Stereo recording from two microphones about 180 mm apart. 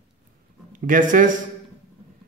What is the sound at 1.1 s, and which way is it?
Speech, 45° right (ahead or behind).